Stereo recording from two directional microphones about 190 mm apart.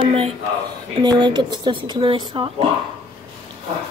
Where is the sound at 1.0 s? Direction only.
25° right (ahead or behind).